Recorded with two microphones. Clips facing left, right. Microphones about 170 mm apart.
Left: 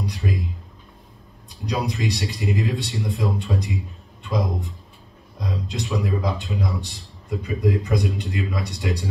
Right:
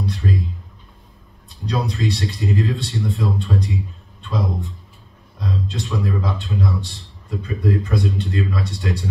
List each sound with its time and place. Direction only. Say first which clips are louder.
0.0 s a sound: right 3 dB; 15° left (ahead or behind)
1.7 s a man's voice: right 2 dB; 15° left (ahead or behind)
5.4 s a man's voice: right 3 dB; 15° left (ahead or behind)